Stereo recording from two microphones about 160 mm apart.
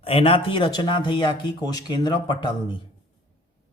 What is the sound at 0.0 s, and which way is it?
Speech, 35° left (ahead or behind).